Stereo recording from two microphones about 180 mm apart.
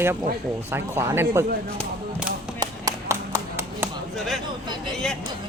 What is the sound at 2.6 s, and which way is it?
Clapping, 20° right (ahead or behind).